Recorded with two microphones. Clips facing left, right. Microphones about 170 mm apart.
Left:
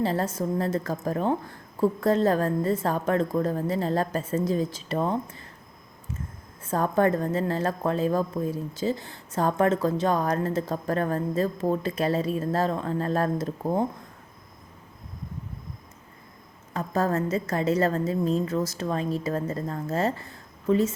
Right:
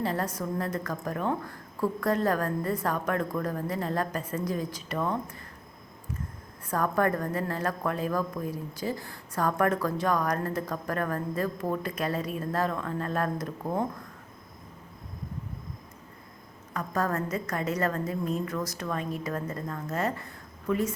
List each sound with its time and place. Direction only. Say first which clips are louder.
0.0 s a woman's voice: left 4 dB; 30° left (ahead or behind)
6.7 s a woman's voice: left 4 dB; 25° left (ahead or behind)
16.7 s a woman's voice: left 4 dB; 25° left (ahead or behind)